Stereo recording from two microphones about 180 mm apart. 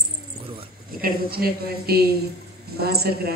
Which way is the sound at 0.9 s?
55° right (ahead or behind).